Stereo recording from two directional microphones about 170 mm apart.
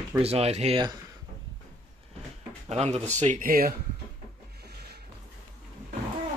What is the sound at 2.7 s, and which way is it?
Speech, 40° right (ahead or behind).